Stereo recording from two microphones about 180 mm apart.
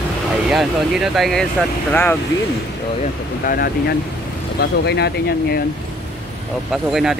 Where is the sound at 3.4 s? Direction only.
55° left (ahead or behind).